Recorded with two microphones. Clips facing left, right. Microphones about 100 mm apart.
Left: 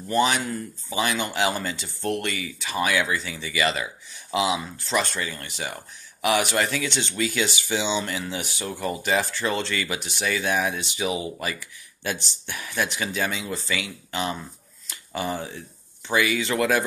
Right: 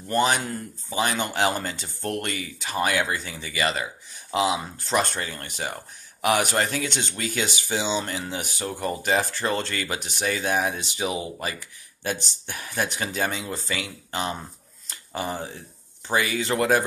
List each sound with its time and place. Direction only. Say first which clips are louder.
0.1 s speech: even; 45° right (ahead or behind)
14.9 s a sound: left 1 dB; 40° right (ahead or behind)
16.1 s speech: left 1 dB; 40° right (ahead or behind)